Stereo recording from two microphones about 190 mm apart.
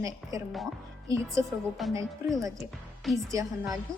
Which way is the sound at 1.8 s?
Centre (ahead or behind).